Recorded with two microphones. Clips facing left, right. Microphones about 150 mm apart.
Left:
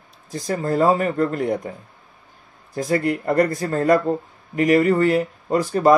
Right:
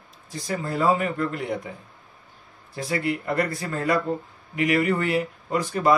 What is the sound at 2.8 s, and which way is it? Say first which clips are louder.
Speech: left 5 dB; 45° left (ahead or behind).